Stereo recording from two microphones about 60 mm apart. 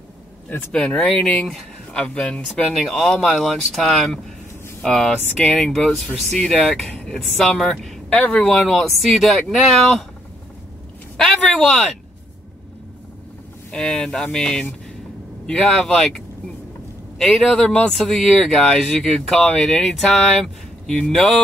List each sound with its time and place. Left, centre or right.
0.9 s speech: centre
8.1 s speech: left
8.5 s speech: centre
11.1 s a sound: centre
13.7 s speech: centre
17.5 s speech: centre